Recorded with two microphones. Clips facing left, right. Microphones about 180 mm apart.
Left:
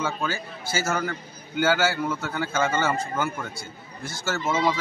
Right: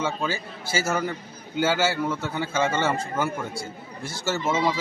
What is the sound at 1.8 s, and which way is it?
A man's voice, centre (ahead or behind).